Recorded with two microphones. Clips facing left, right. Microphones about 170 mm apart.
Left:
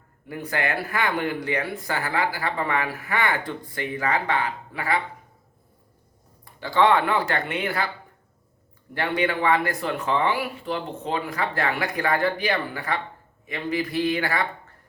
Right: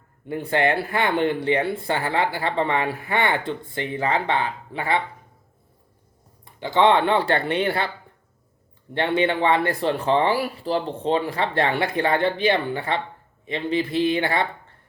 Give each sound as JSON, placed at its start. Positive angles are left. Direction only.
{"t": 0.3, "sound": "speech", "side_deg": -25}
{"t": 6.4, "sound": "speech", "side_deg": -20}
{"t": 9.0, "sound": "speech", "side_deg": -25}